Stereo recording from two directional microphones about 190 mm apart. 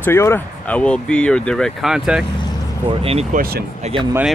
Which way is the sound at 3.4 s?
50° right (ahead or behind).